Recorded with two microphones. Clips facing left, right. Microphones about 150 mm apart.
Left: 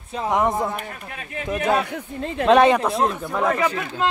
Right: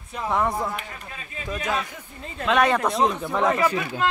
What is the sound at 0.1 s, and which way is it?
Speech, 25° left (ahead or behind).